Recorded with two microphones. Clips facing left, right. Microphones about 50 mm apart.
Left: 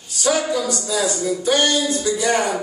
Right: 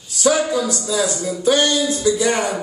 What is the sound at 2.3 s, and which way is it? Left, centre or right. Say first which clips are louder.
Speech: left 1 dB; left.